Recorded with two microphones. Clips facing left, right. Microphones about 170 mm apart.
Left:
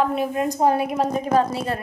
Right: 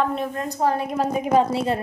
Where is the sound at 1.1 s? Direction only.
15° right (ahead or behind).